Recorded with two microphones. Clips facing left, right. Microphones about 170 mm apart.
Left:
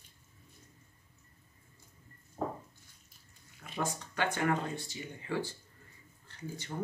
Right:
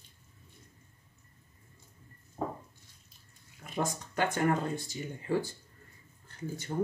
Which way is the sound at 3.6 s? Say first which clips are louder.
Right 3 dB; 45° right (ahead or behind).